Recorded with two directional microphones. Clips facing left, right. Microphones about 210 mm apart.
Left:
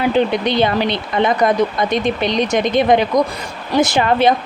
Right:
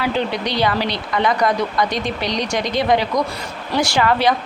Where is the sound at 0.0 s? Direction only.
20° left (ahead or behind).